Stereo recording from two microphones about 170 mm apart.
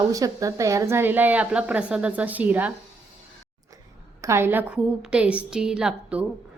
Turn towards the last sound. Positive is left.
turn(degrees=-5)  # may be behind; listen again after turning